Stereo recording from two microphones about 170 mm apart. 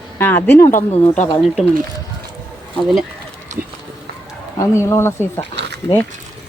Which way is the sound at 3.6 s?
10° right (ahead or behind).